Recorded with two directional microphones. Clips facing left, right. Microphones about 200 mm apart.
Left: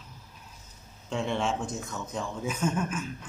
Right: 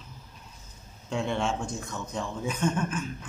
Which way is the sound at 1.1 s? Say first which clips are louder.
Even; centre (ahead or behind).